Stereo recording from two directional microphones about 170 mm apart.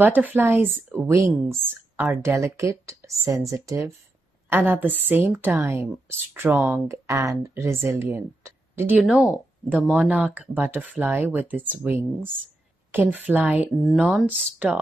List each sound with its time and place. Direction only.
0.0 s a woman's voice: 10° right (ahead or behind)